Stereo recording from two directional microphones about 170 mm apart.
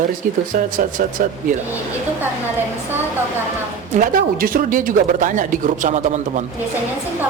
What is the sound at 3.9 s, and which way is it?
Speech, 50° right (ahead or behind).